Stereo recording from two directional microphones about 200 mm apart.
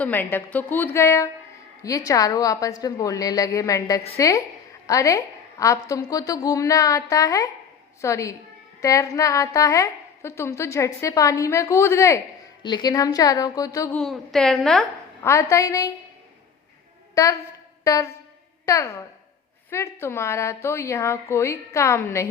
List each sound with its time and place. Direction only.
0.0 s a woman's voice: 10° left (ahead or behind)
13.9 s a woman's voice: centre (ahead or behind)
15.3 s a woman's voice: 15° left (ahead or behind)
17.2 s a woman's voice: 15° left (ahead or behind)